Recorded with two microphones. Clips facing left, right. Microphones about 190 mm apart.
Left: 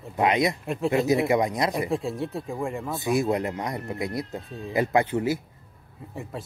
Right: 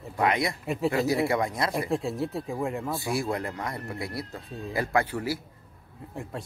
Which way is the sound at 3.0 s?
20° left (ahead or behind).